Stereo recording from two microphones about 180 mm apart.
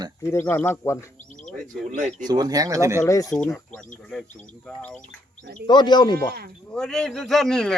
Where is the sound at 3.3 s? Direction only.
5° left (ahead or behind).